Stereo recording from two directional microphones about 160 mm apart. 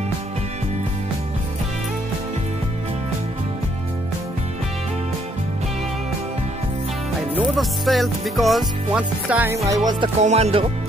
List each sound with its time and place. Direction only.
7.2 s music: centre (ahead or behind)
9.7 s music: 25° right (ahead or behind)
10.2 s music: 45° right (ahead or behind)